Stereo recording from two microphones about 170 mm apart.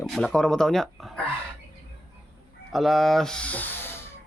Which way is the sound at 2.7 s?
Centre (ahead or behind).